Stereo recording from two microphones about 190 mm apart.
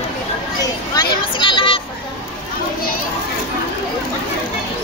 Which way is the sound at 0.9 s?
25° left (ahead or behind).